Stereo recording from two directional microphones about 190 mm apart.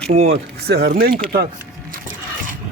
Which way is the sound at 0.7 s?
55° right (ahead or behind).